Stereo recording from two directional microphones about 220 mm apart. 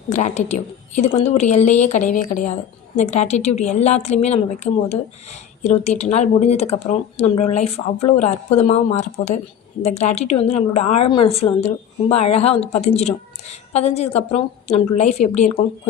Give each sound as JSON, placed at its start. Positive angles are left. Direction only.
{"t": 0.1, "sound": "a woman's voice", "side_deg": 30}